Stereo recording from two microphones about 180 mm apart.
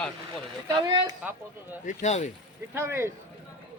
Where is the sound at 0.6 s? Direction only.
25° right (ahead or behind).